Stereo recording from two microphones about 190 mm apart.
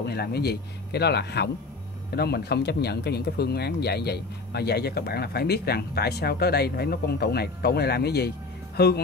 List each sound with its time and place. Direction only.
0.0 s speech: 55° left (ahead or behind)